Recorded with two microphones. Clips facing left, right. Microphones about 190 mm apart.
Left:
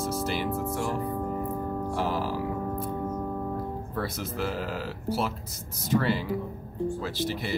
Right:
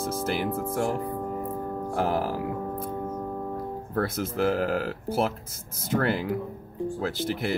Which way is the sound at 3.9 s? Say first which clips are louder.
Right 7 dB; 55° right (ahead or behind).